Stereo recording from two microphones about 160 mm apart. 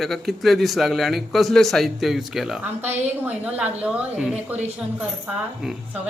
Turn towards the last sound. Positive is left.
turn(degrees=-5)  # may be behind; listen again after turning